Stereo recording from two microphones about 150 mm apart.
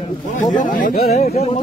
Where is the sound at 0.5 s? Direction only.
60° left (ahead or behind).